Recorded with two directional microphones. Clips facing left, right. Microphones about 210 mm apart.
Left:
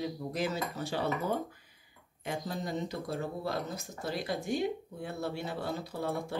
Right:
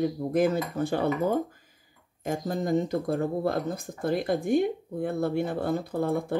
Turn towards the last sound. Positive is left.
turn(degrees=-50)  # may be behind; listen again after turning